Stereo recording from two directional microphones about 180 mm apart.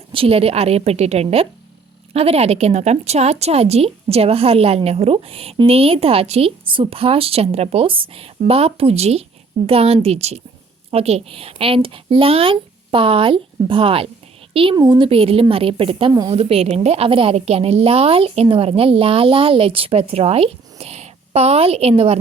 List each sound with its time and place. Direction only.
0.1 s a woman's voice: 30° right (ahead or behind)